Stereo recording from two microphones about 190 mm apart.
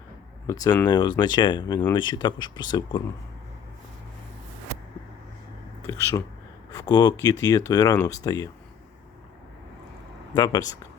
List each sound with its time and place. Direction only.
0.4 s speech: 20° left (ahead or behind)
6.7 s speech: 20° left (ahead or behind)
10.3 s speech: 20° left (ahead or behind)